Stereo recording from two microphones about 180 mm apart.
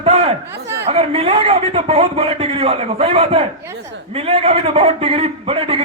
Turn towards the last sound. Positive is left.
turn(degrees=-30)  # may be behind; listen again after turning